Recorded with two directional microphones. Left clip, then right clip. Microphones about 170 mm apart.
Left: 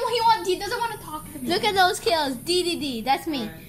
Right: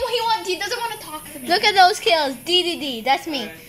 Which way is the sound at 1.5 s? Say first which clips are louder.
Right 6 dB; 35° right (ahead or behind).